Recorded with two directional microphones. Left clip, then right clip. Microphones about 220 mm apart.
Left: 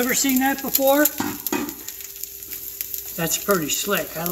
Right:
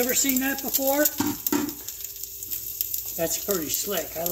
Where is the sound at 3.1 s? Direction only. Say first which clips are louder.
Left 5 dB; 30° left (ahead or behind).